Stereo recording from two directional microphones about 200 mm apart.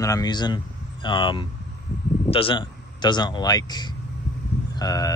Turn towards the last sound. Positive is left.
turn(degrees=20)  # may be behind; listen again after turning